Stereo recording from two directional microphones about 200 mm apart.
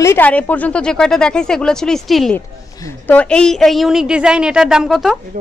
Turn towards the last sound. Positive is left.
turn(degrees=0)  # may be behind; listen again after turning